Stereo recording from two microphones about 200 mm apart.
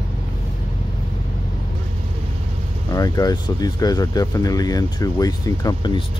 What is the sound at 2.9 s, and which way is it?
Speech, 20° left (ahead or behind).